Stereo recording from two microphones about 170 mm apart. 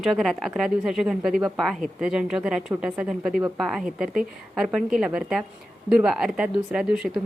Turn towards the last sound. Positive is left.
turn(degrees=-5)  # may be behind; listen again after turning